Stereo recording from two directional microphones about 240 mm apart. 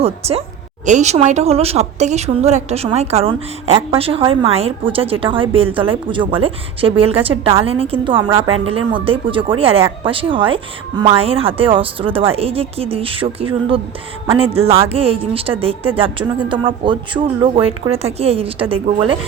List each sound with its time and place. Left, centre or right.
0.0 s speech: right